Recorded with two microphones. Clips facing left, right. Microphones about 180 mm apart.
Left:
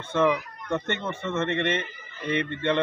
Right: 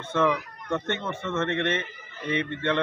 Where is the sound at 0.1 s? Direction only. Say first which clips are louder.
Left 1 dB; 15° left (ahead or behind).